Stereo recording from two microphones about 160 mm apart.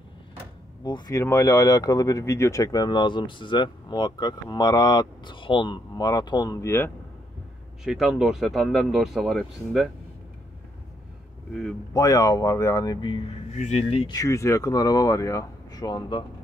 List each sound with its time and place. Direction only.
0.8 s speech: 25° left (ahead or behind)
7.8 s speech: 5° right (ahead or behind)
11.9 s speech: 20° left (ahead or behind); by 14.1 s 40° left (ahead or behind)
14.1 s speech: 20° left (ahead or behind)